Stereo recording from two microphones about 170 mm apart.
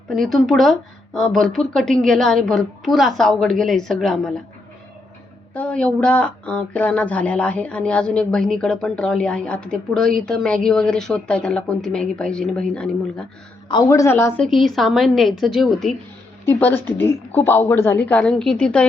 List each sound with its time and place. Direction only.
0.1 s speech: centre (ahead or behind)
5.5 s speech: 5° left (ahead or behind)
13.7 s a woman's voice: 20° left (ahead or behind)
14.4 s a woman's voice: centre (ahead or behind)